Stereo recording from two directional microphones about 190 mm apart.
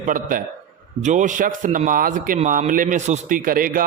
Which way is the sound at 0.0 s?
45° right (ahead or behind).